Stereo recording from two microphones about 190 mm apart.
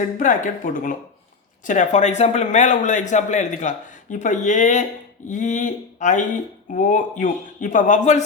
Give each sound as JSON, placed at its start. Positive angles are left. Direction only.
{"t": 0.2, "sound": "speech", "side_deg": 45}